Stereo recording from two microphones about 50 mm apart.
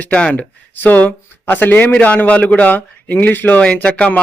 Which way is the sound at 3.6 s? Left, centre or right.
Left.